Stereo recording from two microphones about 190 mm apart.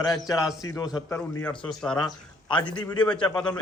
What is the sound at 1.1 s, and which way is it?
Speech, 5° left (ahead or behind).